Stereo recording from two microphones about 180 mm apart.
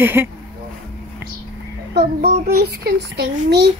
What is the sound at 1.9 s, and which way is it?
A child's voice, 60° right (ahead or behind).